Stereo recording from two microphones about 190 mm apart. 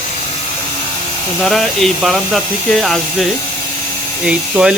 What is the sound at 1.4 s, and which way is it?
Speech, centre (ahead or behind).